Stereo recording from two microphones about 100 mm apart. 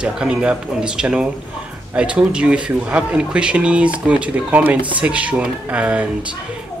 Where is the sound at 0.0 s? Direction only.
10° right (ahead or behind).